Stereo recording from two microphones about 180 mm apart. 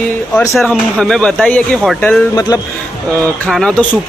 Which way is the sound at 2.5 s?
20° left (ahead or behind).